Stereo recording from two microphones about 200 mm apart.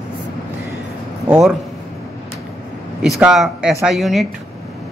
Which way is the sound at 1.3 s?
5° right (ahead or behind).